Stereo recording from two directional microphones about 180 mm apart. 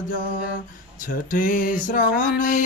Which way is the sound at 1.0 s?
45° left (ahead or behind).